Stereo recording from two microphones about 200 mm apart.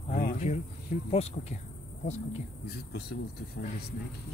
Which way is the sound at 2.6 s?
50° left (ahead or behind).